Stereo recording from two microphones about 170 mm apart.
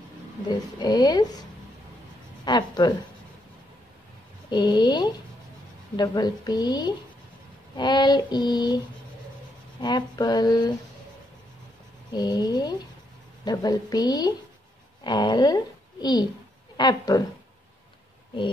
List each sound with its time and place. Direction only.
0.5 s female singing: 25° left (ahead or behind)
2.4 s speech: 25° left (ahead or behind)
4.5 s female singing: 25° left (ahead or behind)
12.1 s female singing: 25° left (ahead or behind)
15.0 s a woman's voice: 25° left (ahead or behind)